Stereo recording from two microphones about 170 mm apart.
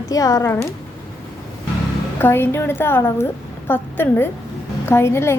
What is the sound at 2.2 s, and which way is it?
A woman's voice, 15° left (ahead or behind).